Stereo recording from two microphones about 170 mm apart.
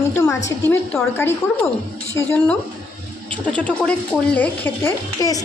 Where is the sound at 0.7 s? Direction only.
15° left (ahead or behind).